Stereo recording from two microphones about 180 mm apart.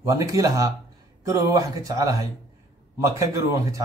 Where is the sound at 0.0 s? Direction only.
20° right (ahead or behind).